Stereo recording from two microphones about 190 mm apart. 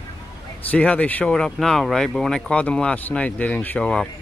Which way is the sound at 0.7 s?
5° left (ahead or behind).